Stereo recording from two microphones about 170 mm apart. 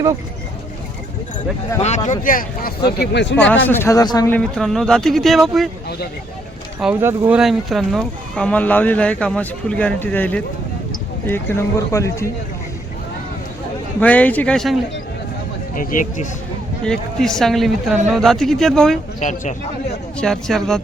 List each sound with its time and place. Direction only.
1.8 s speech: 45° left (ahead or behind)
3.0 s speech: 85° left
3.7 s speech: 15° left (ahead or behind)
4.3 s speech: 5° left (ahead or behind)
6.7 s speech: 10° right (ahead or behind)
7.3 s speech: centre (ahead or behind); by 12.3 s 20° left (ahead or behind)
14.0 s speech: 10° left (ahead or behind)
15.7 s speech: 55° left (ahead or behind)
16.8 s speech: 5° left (ahead or behind)
19.2 s speech: 45° left (ahead or behind)
20.1 s speech: 5° left (ahead or behind)